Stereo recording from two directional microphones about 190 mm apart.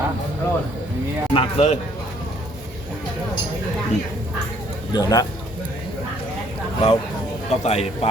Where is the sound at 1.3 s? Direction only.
30° left (ahead or behind).